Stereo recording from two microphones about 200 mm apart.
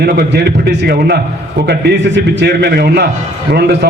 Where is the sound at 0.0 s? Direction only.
55° right (ahead or behind).